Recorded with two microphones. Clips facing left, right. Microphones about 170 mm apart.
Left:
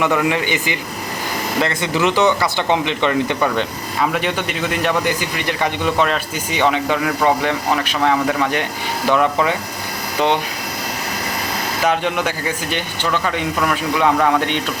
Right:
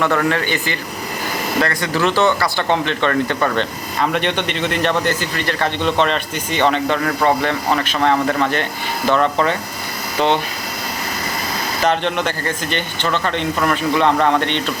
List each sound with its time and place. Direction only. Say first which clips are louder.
0.0 s speech: even; 15° left (ahead or behind)
11.9 s speech: even; 10° left (ahead or behind)